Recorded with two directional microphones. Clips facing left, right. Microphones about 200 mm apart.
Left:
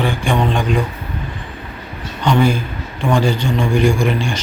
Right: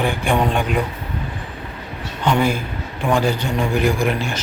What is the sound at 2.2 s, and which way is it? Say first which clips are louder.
A man's voice: left 3 dB; 5° right (ahead or behind).